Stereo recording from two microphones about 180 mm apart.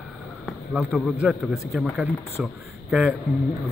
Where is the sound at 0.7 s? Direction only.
5° right (ahead or behind).